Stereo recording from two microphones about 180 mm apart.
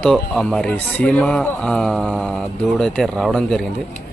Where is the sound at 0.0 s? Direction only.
5° left (ahead or behind).